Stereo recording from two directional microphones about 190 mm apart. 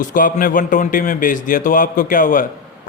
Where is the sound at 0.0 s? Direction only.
45° left (ahead or behind).